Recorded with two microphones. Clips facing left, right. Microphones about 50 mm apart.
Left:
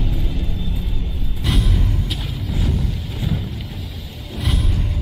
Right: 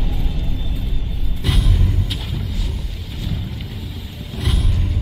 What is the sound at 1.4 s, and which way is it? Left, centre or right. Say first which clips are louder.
Music: even; centre.